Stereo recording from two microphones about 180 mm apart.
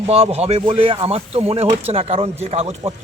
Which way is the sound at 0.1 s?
35° right (ahead or behind).